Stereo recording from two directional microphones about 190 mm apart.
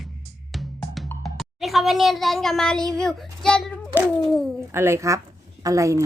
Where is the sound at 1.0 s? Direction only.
Centre (ahead or behind).